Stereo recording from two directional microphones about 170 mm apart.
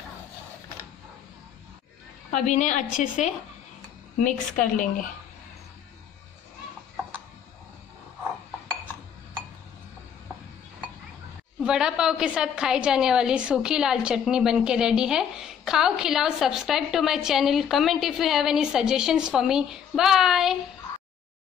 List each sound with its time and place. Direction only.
2.3 s a woman's voice: 45° left (ahead or behind)
4.2 s a woman's voice: 50° left (ahead or behind)
11.6 s a woman's voice: 5° right (ahead or behind)